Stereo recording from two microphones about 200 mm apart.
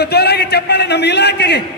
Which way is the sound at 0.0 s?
55° left (ahead or behind).